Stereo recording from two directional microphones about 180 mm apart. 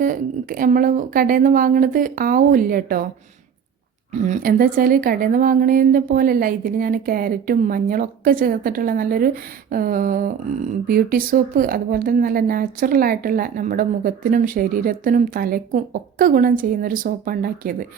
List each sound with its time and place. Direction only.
0.0 s speech: 50° right (ahead or behind)
4.3 s speech: 50° right (ahead or behind)